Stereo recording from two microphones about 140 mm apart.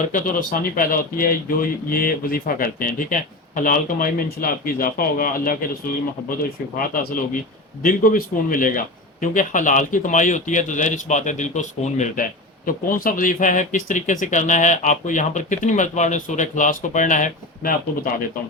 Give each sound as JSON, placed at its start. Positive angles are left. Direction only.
{"t": 0.0, "sound": "speech", "side_deg": 70}
{"t": 6.7, "sound": "a man's voice", "side_deg": 80}